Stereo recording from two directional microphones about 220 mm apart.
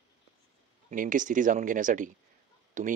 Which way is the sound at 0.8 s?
35° right (ahead or behind).